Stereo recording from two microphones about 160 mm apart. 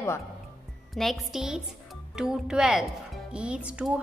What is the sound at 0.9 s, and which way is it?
Speech, centre (ahead or behind).